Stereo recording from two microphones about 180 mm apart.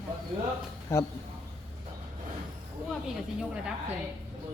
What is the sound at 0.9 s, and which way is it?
Speech, 15° left (ahead or behind).